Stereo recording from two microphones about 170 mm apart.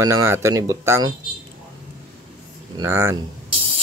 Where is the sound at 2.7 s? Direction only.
15° right (ahead or behind).